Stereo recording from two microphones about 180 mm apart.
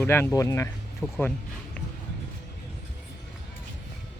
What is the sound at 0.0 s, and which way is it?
Speech, 15° left (ahead or behind).